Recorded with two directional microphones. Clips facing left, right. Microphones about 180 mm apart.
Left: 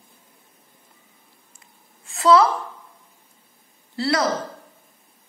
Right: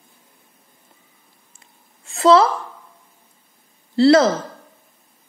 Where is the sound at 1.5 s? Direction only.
25° right (ahead or behind).